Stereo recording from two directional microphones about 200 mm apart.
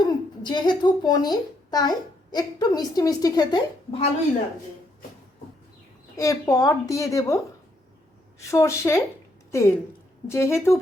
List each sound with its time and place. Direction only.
0.0 s a child's voice: 20° left (ahead or behind)
6.1 s a woman's voice: 15° left (ahead or behind)
8.4 s a woman's voice: 15° left (ahead or behind)